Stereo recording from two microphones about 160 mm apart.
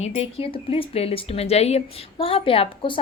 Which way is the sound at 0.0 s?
40° left (ahead or behind).